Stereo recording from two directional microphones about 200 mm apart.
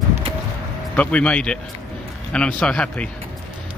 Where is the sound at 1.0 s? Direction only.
5° left (ahead or behind).